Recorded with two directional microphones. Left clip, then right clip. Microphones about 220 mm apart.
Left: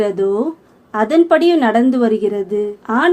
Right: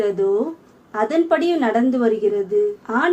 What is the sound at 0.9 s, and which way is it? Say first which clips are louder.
Speech: left 6 dB; 50° left (ahead or behind).